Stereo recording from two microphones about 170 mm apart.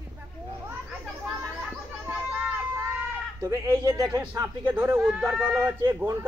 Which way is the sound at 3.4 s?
15° right (ahead or behind).